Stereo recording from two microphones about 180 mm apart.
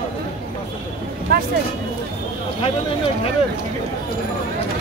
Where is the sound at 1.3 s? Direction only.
60° right (ahead or behind).